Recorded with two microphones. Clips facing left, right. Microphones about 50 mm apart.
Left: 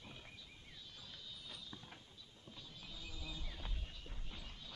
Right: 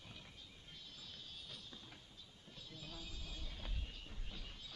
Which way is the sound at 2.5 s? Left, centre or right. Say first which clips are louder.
Right 2 dB; right.